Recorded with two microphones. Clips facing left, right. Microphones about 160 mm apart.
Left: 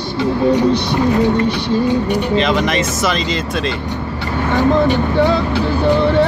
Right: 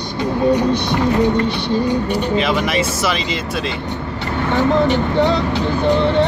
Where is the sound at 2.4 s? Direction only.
5° right (ahead or behind).